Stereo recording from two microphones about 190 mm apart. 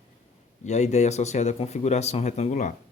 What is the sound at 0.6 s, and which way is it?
Speech, 35° left (ahead or behind).